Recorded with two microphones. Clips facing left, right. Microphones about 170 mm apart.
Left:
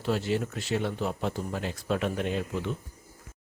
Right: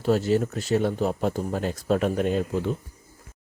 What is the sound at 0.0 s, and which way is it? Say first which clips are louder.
Speech: right 6 dB; 45° right (ahead or behind).